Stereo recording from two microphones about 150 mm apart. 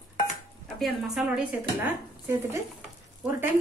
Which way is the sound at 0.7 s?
Centre (ahead or behind).